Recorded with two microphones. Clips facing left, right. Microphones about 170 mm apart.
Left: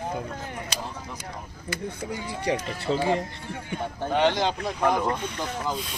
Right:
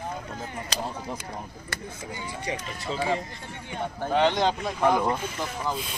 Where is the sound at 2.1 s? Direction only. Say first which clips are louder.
Left 5 dB; 65° left (ahead or behind).